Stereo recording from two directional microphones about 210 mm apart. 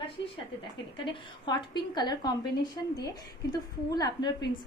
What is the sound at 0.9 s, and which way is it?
A woman's voice, 20° left (ahead or behind).